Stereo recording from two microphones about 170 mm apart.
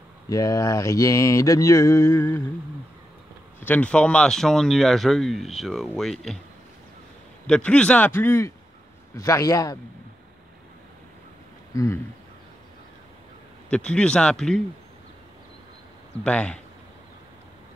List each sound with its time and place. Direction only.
0.3 s mantra: 20° left (ahead or behind)
3.6 s speech: 10° left (ahead or behind)
7.4 s a man's voice: 5° left (ahead or behind)
9.1 s mantra: 20° left (ahead or behind)
11.7 s a sound: 20° left (ahead or behind)
13.7 s speech: 5° left (ahead or behind)
16.3 s a man's voice: 5° left (ahead or behind)